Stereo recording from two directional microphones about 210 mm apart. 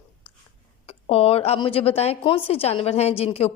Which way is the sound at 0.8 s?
30° left (ahead or behind).